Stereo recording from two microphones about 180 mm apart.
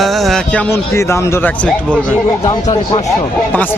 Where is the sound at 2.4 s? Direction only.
20° left (ahead or behind).